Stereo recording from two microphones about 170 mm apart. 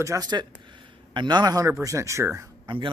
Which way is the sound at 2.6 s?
30° right (ahead or behind).